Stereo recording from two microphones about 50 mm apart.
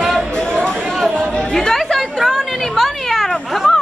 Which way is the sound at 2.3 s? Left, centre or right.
Centre.